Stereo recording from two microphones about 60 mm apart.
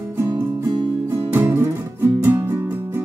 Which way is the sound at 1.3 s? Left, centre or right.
Right.